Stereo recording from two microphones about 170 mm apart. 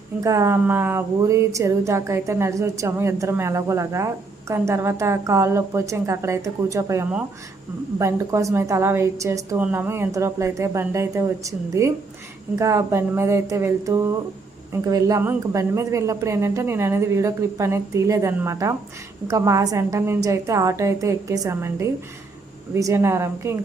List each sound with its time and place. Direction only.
0.2 s speech: 20° right (ahead or behind)